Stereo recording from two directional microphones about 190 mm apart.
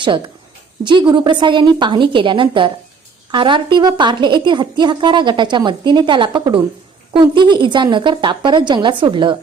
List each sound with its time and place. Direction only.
0.9 s a woman's voice: 25° right (ahead or behind)